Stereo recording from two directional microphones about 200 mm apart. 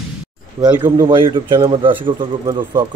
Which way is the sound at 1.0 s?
25° right (ahead or behind).